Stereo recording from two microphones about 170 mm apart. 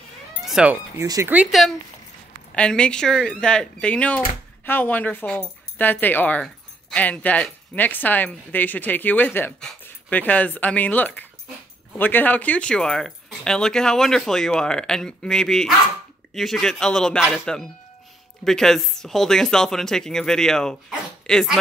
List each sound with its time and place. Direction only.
0.4 s cat: 5° right (ahead or behind)
0.9 s speech: 20° right (ahead or behind)
1.3 s speech: 5° right (ahead or behind)
2.5 s speech: 5° left (ahead or behind)